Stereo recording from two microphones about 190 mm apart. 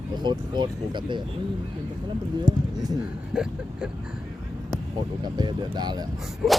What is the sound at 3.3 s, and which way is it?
Speech, 5° right (ahead or behind).